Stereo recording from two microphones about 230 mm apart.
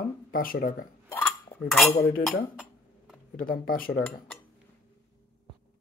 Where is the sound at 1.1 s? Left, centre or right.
Centre.